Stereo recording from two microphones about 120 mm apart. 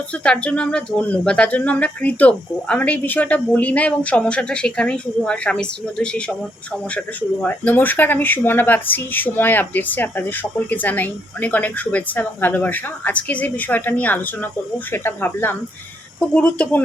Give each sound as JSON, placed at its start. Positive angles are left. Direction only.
{"t": 0.2, "sound": "speech", "side_deg": 10}